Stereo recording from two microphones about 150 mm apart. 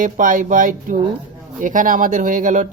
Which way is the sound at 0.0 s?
60° right (ahead or behind).